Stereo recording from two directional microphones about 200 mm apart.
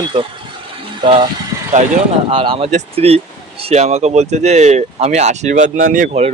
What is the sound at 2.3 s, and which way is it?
Speech, 25° right (ahead or behind).